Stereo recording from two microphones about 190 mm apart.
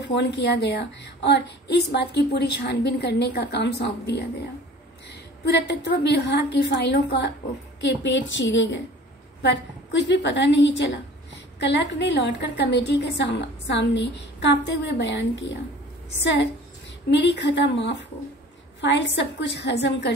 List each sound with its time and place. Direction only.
0.0 s a woman's voice: 65° left (ahead or behind)